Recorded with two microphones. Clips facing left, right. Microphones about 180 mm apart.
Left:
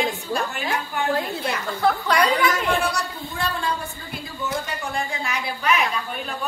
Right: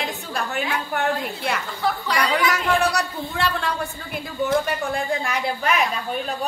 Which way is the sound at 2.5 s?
70° right (ahead or behind).